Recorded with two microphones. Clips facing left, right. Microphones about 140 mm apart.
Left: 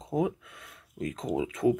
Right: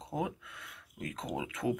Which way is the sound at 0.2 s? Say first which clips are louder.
Left 7 dB; 40° left (ahead or behind).